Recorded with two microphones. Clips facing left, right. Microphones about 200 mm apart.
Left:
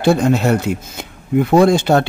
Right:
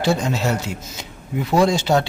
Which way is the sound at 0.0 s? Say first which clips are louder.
Left 7 dB; 55° left (ahead or behind).